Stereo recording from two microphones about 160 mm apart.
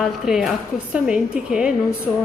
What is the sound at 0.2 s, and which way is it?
A woman's voice, centre (ahead or behind).